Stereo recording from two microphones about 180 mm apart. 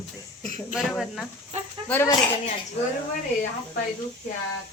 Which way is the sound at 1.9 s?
10° left (ahead or behind).